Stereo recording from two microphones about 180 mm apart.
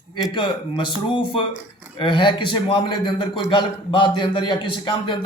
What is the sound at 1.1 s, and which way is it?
A man's voice, 25° left (ahead or behind).